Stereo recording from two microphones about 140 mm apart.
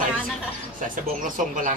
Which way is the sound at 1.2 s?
70° right (ahead or behind).